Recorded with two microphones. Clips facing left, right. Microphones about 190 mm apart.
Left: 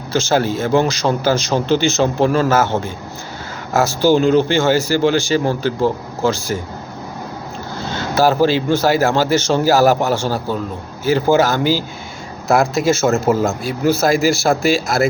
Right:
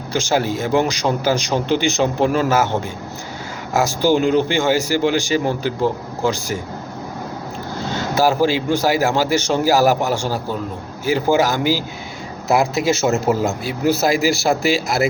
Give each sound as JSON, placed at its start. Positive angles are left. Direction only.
{"t": 0.1, "sound": "speech", "side_deg": -15}
{"t": 3.7, "sound": "speech", "side_deg": -15}
{"t": 7.9, "sound": "speech", "side_deg": -15}